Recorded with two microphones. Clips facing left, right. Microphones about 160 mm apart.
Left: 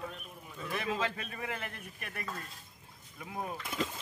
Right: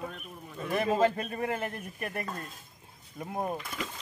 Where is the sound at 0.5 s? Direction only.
45° right (ahead or behind).